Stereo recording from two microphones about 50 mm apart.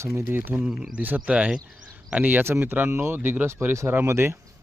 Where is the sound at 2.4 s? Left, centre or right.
Right.